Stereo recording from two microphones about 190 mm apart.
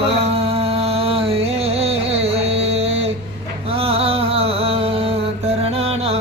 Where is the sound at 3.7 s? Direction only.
30° right (ahead or behind).